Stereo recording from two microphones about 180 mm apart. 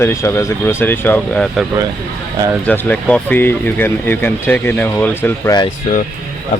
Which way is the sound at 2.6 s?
10° left (ahead or behind).